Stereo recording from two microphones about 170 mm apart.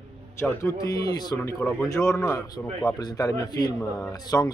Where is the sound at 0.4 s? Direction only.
15° left (ahead or behind).